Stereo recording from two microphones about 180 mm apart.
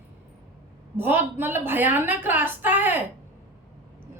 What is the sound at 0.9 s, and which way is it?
A woman's voice, 10° right (ahead or behind).